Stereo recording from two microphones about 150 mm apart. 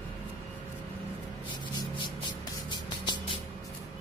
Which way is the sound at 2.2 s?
30° left (ahead or behind).